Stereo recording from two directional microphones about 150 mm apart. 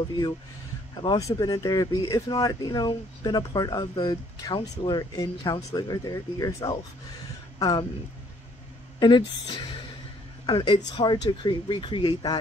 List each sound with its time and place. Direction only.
1.0 s speech: 25° left (ahead or behind)
9.0 s a woman's voice: 30° left (ahead or behind)